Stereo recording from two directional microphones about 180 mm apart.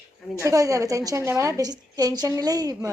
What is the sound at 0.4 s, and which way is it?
A woman's voice, 20° right (ahead or behind).